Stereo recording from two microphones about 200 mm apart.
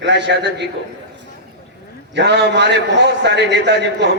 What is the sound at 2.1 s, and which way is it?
A man's voice, 60° right (ahead or behind).